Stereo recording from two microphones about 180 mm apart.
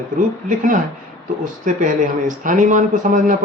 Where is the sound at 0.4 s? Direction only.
45° right (ahead or behind).